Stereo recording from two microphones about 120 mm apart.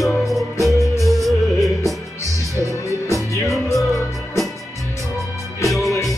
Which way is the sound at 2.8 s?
25° left (ahead or behind).